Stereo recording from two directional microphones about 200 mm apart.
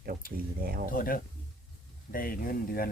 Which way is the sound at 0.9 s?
45° left (ahead or behind).